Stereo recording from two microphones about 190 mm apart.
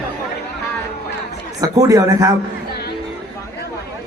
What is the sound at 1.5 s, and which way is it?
Speech, 20° right (ahead or behind).